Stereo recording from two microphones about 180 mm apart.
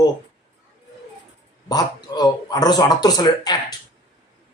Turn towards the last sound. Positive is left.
turn(degrees=20)  # may be behind; listen again after turning